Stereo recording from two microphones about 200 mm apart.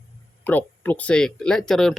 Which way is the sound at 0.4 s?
10° left (ahead or behind).